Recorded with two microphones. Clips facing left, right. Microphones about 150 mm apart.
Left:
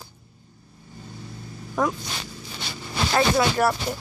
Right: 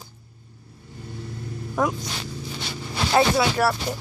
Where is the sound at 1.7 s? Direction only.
10° right (ahead or behind).